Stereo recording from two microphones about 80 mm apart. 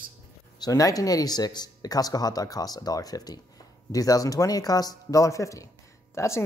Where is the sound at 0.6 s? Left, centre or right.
Left.